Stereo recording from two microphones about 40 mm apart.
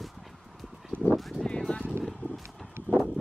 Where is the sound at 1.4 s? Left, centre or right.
Left.